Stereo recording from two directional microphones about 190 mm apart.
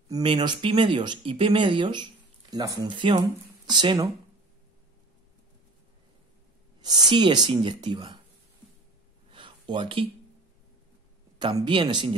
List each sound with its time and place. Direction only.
0.1 s speech: 25° right (ahead or behind)
6.8 s a woman's voice: 20° right (ahead or behind)
9.3 s a sound: 25° right (ahead or behind)
11.3 s speech: 25° right (ahead or behind)